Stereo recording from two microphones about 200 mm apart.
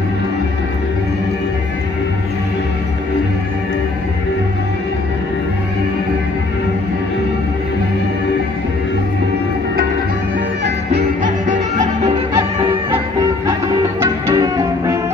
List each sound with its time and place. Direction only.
10.6 s music: 50° right (ahead or behind)
11.8 s music: 30° right (ahead or behind)
12.9 s music: 15° right (ahead or behind)